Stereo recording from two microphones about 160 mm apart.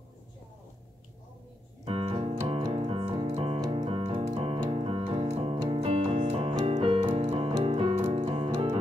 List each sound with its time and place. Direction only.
1.9 s keyboard: 35° right (ahead or behind)